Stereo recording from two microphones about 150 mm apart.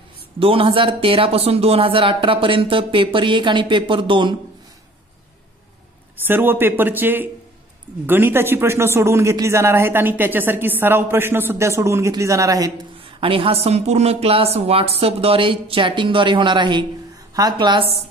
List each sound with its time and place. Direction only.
0.4 s speech: 35° right (ahead or behind)
6.2 s speech: 15° right (ahead or behind)
13.2 s speech: 40° right (ahead or behind)